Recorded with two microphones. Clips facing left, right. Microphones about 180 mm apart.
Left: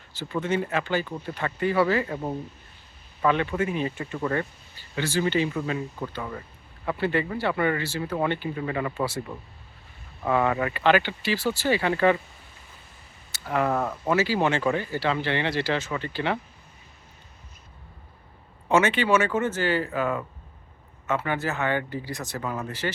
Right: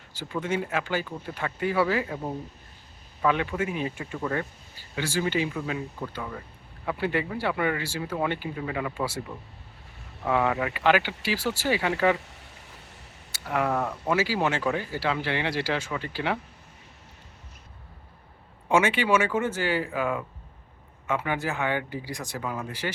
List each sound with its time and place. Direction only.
0.1 s speech: 10° right (ahead or behind)
3.2 s a man's voice: 5° right (ahead or behind)
10.2 s speech: 5° right (ahead or behind)
12.1 s a sound: 80° right
13.3 s speech: 5° right (ahead or behind)
13.7 s speech: 5° left (ahead or behind)
14.1 s speech: 10° right (ahead or behind)
18.7 s speech: 10° right (ahead or behind)